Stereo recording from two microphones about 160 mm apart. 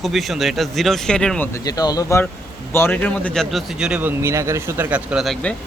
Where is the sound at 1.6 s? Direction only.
25° left (ahead or behind); by 4.1 s 5° right (ahead or behind).